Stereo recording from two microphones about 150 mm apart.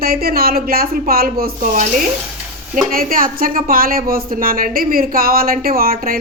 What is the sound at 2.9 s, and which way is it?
Speech, 70° right (ahead or behind).